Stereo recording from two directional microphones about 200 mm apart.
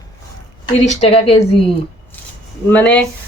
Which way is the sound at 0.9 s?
30° left (ahead or behind).